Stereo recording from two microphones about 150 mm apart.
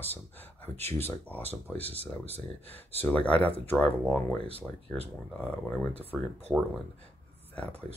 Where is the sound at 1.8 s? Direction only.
40° right (ahead or behind).